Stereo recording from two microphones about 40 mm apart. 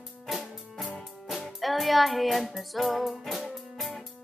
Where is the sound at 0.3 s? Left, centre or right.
Centre.